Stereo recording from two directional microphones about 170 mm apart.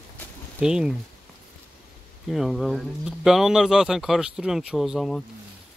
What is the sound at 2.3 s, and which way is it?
Speech, centre (ahead or behind).